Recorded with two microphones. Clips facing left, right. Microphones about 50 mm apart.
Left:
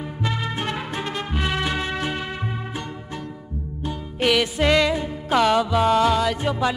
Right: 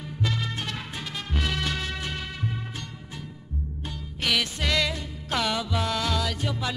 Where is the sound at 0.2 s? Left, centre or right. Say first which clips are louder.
Left 4 dB; left.